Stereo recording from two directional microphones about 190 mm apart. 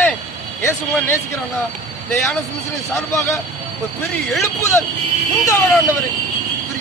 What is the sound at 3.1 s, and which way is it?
Speech, 15° left (ahead or behind).